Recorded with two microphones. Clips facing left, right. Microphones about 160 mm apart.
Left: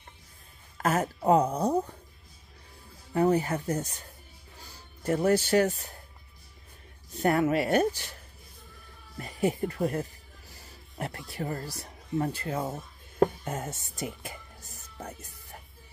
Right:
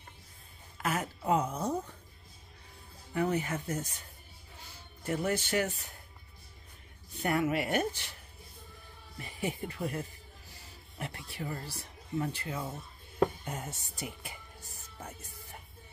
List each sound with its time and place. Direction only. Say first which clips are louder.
0.7 s a sound: left 7 dB; 40° left (ahead or behind)
3.1 s speech: left 7 dB; 35° left (ahead or behind)
7.2 s speech: left 5 dB; 40° left (ahead or behind)
9.2 s speech: left 8 dB; 40° left (ahead or behind)